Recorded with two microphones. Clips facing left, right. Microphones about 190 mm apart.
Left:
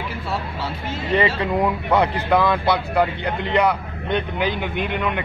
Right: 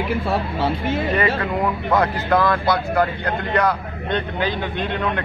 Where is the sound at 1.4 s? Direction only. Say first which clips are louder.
Left 1 dB; 15° left (ahead or behind).